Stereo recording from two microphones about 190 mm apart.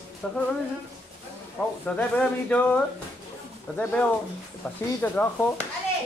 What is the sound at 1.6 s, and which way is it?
Speech, 10° left (ahead or behind).